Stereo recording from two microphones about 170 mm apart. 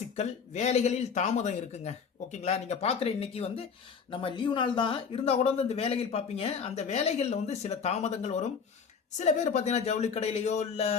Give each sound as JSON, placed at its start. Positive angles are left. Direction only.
{"t": 0.2, "sound": "speech", "side_deg": 40}